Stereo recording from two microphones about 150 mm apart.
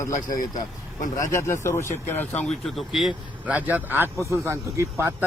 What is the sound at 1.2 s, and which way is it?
Speech, 20° left (ahead or behind).